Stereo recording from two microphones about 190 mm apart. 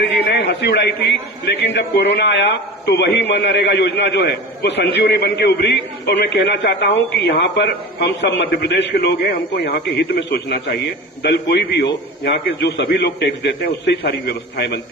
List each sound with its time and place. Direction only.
0.3 s a man's voice: 60° left (ahead or behind)